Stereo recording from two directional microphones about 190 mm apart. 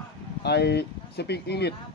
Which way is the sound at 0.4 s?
60° left (ahead or behind).